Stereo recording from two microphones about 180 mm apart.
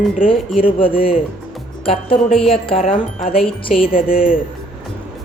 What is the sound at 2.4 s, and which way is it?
Speech, 30° left (ahead or behind).